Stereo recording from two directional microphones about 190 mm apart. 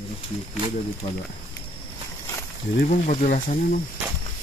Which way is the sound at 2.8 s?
35° left (ahead or behind).